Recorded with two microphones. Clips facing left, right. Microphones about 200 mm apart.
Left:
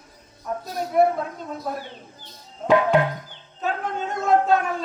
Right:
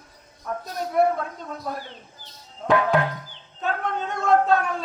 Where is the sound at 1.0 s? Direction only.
Centre (ahead or behind).